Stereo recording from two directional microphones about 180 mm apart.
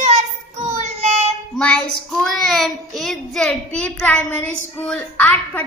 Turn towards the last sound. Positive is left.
turn(degrees=10)  # may be behind; listen again after turning